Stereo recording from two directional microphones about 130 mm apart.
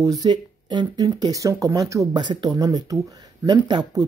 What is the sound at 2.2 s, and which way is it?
Speech, 35° right (ahead or behind).